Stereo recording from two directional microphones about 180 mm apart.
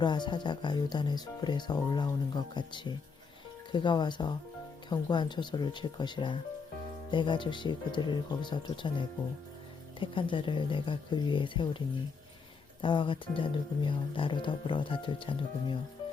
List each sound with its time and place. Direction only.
0.0 s speech: 25° left (ahead or behind)
12.8 s speech: 25° left (ahead or behind)